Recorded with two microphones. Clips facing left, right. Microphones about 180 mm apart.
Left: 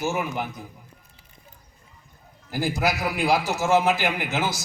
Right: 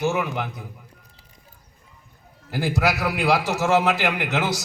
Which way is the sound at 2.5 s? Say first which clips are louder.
Right 2 dB; 65° right (ahead or behind).